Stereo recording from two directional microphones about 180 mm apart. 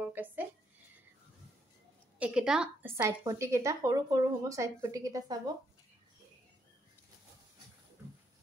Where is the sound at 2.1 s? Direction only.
5° right (ahead or behind).